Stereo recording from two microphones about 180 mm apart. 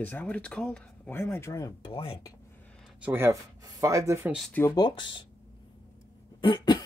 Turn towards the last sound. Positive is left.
turn(degrees=25)  # may be behind; listen again after turning